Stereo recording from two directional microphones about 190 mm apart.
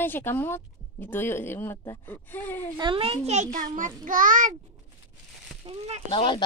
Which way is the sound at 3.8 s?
45° right (ahead or behind).